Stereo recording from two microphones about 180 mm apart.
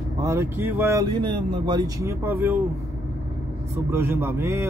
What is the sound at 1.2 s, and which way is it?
Speech, 25° right (ahead or behind).